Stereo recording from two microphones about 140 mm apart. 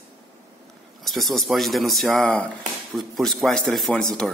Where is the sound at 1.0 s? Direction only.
Centre (ahead or behind).